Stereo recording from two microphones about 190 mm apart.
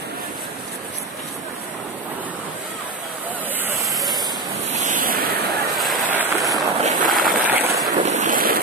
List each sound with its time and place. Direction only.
4.8 s waves: 45° right (ahead or behind)
5.8 s a sound: centre (ahead or behind)
6.2 s a sound: 20° right (ahead or behind)
6.8 s vehicle: 45° right (ahead or behind)
7.2 s vehicle: 10° right (ahead or behind)
7.9 s boat: 40° right (ahead or behind)